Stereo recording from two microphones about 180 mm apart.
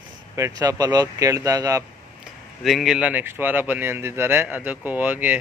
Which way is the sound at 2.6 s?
Centre (ahead or behind).